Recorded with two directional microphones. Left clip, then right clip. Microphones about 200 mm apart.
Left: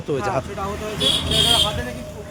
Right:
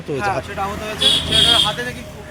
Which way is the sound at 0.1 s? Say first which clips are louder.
Right 2 dB; 10° left (ahead or behind).